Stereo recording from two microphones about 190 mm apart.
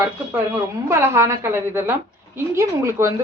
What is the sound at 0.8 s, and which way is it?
A woman's voice, 15° right (ahead or behind).